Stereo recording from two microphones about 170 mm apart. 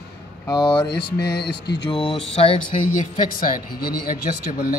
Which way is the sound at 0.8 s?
75° left (ahead or behind).